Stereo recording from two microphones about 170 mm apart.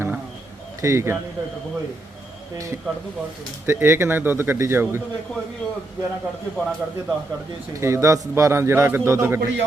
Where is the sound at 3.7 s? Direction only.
15° right (ahead or behind).